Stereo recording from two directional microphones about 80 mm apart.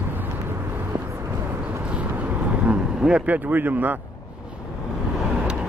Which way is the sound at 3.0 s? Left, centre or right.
Centre.